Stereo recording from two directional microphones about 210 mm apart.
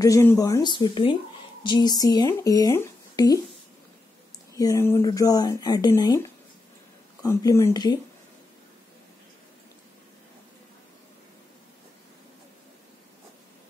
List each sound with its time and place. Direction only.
0.0 s speech: 15° left (ahead or behind)
4.6 s speech: 15° left (ahead or behind)
7.2 s speech: 15° left (ahead or behind)